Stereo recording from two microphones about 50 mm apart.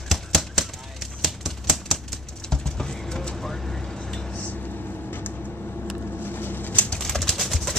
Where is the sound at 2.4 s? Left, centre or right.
Centre.